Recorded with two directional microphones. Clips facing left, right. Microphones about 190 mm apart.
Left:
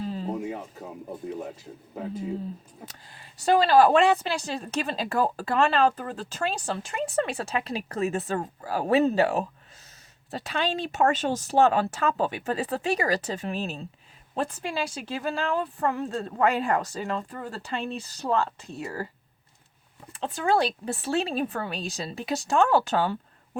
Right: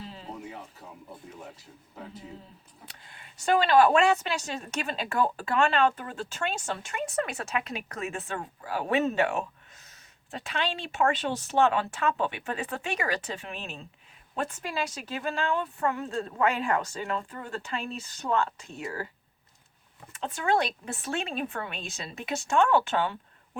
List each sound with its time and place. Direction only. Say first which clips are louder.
0.0 s a sound: left 10 dB; 45° left (ahead or behind)
2.8 s a woman's voice: left 5 dB; 35° left (ahead or behind)
20.1 s a woman's voice: left 3 dB; 30° left (ahead or behind)